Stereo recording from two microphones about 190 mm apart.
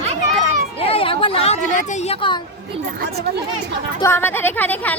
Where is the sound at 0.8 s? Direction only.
30° left (ahead or behind).